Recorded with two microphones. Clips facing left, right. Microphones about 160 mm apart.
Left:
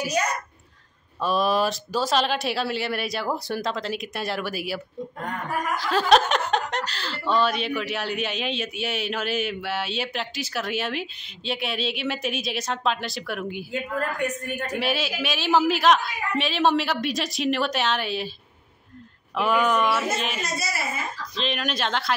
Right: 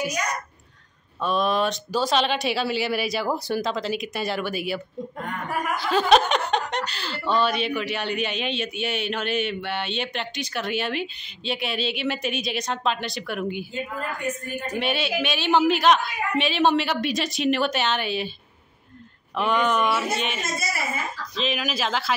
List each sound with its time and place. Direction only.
1.2 s speech: centre (ahead or behind)
13.7 s a woman's voice: 70° left (ahead or behind)
14.8 s speech: centre (ahead or behind)
19.3 s speech: 5° left (ahead or behind)